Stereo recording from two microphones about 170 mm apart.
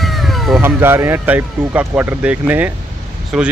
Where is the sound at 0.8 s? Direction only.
15° right (ahead or behind).